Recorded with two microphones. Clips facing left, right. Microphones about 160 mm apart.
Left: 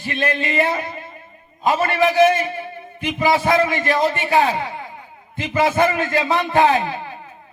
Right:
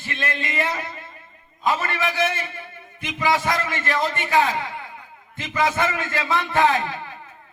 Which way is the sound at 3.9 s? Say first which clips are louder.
Left 5 dB; 40° left (ahead or behind).